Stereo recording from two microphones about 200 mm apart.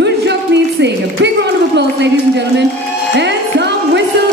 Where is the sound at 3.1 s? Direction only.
60° right (ahead or behind).